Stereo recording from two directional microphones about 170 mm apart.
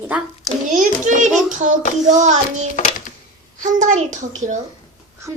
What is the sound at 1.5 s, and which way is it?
Child singing, 50° right (ahead or behind).